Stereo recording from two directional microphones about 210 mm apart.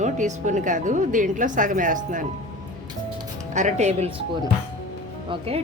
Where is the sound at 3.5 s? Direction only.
35° right (ahead or behind).